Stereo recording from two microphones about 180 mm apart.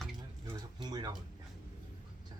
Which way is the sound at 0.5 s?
25° right (ahead or behind).